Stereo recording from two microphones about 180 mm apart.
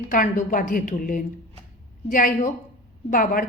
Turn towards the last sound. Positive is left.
turn(degrees=50)  # may be behind; listen again after turning